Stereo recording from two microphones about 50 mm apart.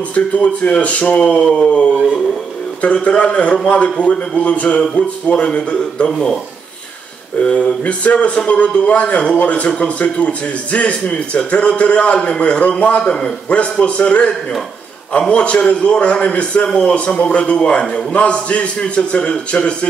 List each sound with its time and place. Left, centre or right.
0.1 s a man's voice: left
2.8 s a man's voice: left
7.3 s a man's voice: left